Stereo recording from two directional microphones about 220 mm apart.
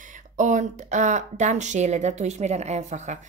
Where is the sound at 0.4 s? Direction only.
35° right (ahead or behind).